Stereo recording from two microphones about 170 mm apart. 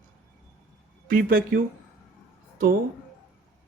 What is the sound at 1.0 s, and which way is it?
Speech, 55° right (ahead or behind).